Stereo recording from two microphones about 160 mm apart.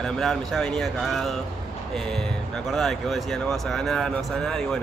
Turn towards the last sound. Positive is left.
turn(degrees=5)  # may be behind; listen again after turning